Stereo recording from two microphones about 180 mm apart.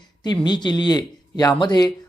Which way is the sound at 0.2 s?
25° left (ahead or behind).